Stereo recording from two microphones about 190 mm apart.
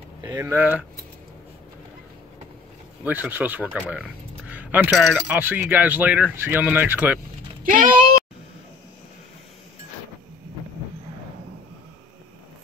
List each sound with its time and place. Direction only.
0.2 s speech: 15° right (ahead or behind)
3.0 s speech: 10° right (ahead or behind)
3.9 s a sound: 5° right (ahead or behind)
4.9 s speech: centre (ahead or behind)
5.3 s speech: 10° right (ahead or behind)
7.6 s bleat: 45° right (ahead or behind)